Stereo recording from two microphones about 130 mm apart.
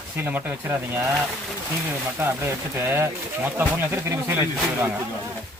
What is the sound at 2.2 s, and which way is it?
Speech, 15° right (ahead or behind).